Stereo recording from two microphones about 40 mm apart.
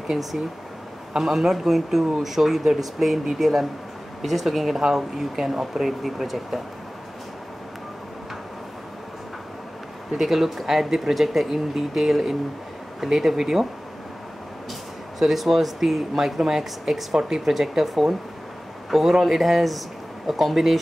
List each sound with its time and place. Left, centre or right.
0.1 s speech: centre
10.1 s speech: centre
15.1 s speech: centre